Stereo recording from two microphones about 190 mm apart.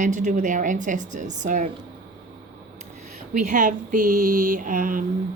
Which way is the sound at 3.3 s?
45° right (ahead or behind).